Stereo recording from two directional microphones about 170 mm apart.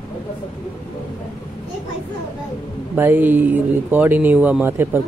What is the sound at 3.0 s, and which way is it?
Speech, 10° right (ahead or behind).